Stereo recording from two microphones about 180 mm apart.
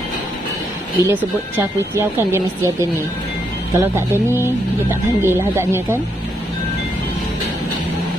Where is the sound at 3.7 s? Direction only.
15° right (ahead or behind).